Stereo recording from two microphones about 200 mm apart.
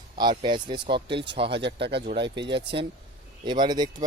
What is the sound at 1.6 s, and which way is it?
Speech, 60° right (ahead or behind).